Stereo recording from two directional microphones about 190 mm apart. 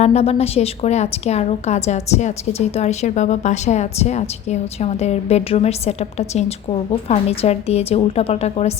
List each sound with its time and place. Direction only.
0.0 s a woman's voice: 35° left (ahead or behind)